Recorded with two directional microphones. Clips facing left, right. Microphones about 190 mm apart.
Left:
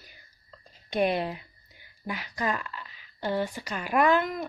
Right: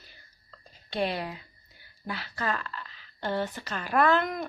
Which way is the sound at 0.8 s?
20° left (ahead or behind).